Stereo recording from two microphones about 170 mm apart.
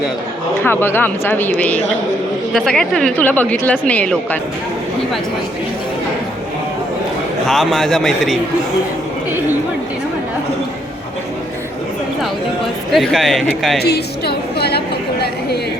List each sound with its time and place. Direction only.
0.6 s a woman's voice: 10° left (ahead or behind)
7.4 s a man's voice: centre (ahead or behind)
12.9 s a man's voice: centre (ahead or behind)
13.7 s a woman's voice: 70° left (ahead or behind)